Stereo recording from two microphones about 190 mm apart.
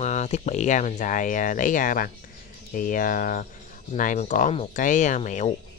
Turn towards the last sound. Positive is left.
turn(degrees=40)  # may be behind; listen again after turning